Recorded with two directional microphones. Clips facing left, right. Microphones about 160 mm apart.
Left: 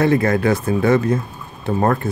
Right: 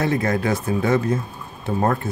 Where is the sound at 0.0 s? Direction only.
65° left (ahead or behind).